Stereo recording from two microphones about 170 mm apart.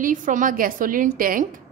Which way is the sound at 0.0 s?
50° right (ahead or behind).